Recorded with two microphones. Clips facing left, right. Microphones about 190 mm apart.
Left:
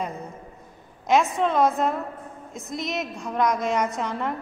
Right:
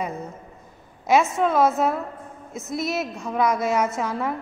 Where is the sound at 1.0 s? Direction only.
5° right (ahead or behind).